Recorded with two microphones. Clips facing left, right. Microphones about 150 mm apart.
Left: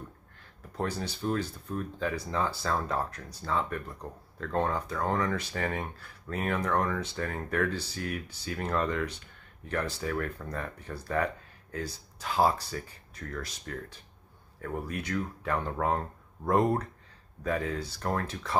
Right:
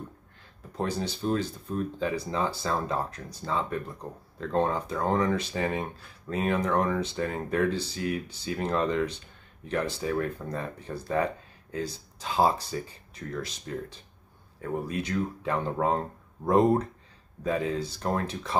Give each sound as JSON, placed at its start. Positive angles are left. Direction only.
{"t": 0.7, "sound": "speech", "side_deg": -20}